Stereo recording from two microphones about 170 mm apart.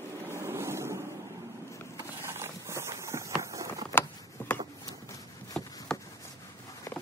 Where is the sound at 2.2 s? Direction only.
15° right (ahead or behind).